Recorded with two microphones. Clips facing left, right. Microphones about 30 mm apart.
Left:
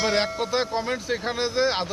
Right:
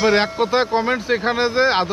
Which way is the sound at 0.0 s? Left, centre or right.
Centre.